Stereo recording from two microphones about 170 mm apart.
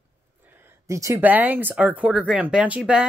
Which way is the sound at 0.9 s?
15° right (ahead or behind).